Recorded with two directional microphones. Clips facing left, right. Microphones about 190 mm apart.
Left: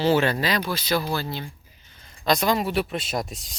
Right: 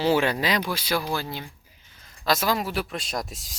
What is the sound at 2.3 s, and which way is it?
Speech, centre (ahead or behind).